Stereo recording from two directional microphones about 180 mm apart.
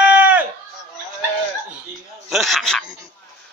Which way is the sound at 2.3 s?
Centre (ahead or behind).